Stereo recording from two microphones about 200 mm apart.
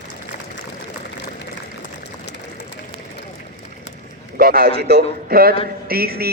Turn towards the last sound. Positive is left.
turn(degrees=-50)  # may be behind; listen again after turning